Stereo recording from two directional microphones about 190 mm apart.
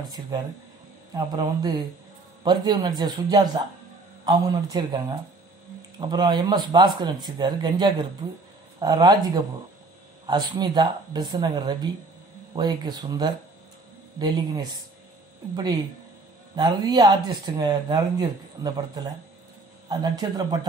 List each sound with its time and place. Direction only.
1.1 s speech: 20° right (ahead or behind)